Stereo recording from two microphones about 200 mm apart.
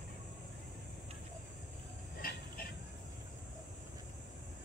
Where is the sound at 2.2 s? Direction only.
50° left (ahead or behind).